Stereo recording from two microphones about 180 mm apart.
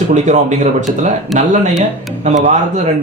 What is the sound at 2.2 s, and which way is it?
Speech, 40° right (ahead or behind).